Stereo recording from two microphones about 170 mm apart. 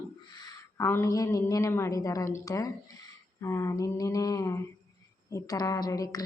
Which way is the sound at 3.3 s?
15° left (ahead or behind).